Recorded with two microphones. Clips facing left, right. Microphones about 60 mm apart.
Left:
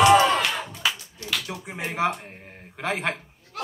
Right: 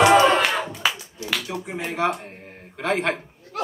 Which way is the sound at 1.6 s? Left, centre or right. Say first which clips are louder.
Right 1 dB; centre.